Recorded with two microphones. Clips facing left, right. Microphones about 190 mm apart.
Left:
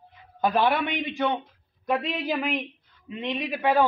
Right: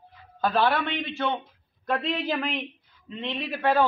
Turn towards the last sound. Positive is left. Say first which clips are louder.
# left 1 dB
turn(degrees=15)  # may be behind; listen again after turning